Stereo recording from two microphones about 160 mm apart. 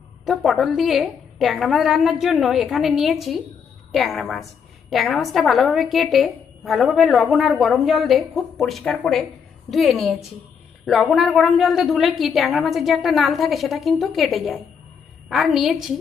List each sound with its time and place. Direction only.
0.3 s a woman's voice: centre (ahead or behind)